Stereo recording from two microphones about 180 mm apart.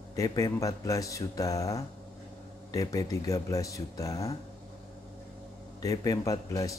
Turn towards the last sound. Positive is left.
turn(degrees=20)  # may be behind; listen again after turning